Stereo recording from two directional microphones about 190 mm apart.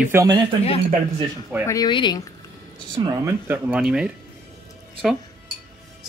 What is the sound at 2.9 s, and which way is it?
Speech, 15° right (ahead or behind).